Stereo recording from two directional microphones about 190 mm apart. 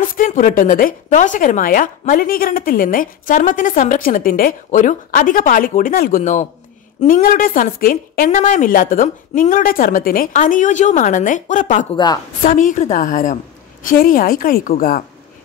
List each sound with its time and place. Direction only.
0.0 s speech: 45° left (ahead or behind)